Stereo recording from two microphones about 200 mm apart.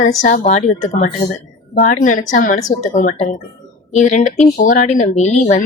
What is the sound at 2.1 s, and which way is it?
Speech, 40° left (ahead or behind).